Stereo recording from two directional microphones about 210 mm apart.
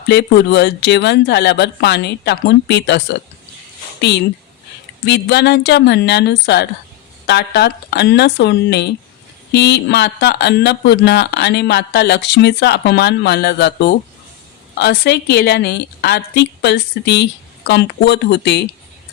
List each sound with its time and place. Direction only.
0.1 s speech: 50° left (ahead or behind)
5.0 s speech: 50° left (ahead or behind)